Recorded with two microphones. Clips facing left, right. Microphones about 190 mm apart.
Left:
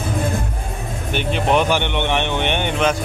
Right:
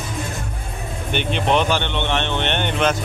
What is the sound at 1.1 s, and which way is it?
Speech, 5° left (ahead or behind).